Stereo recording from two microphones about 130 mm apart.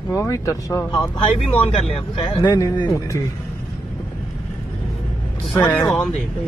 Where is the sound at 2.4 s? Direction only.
25° left (ahead or behind).